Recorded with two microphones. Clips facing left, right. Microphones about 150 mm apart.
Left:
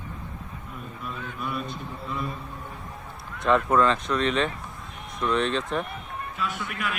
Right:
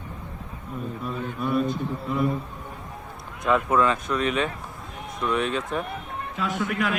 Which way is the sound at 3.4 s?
5° right (ahead or behind).